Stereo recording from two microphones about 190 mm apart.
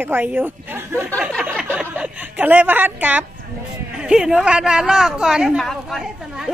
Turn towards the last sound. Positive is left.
turn(degrees=0)  # may be behind; listen again after turning